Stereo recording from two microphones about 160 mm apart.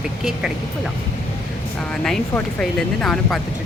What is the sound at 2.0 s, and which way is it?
Speech, 5° left (ahead or behind).